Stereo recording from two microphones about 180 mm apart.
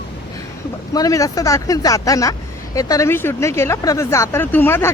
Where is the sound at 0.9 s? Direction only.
20° left (ahead or behind).